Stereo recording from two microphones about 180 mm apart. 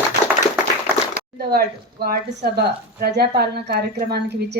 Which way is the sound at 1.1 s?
60° right (ahead or behind).